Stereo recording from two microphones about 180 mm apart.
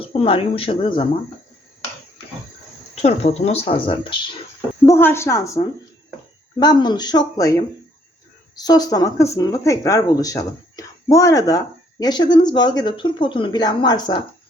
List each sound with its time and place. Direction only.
0.0 s speech: 30° left (ahead or behind)
2.9 s speech: 35° left (ahead or behind)
4.9 s a woman's voice: 15° left (ahead or behind)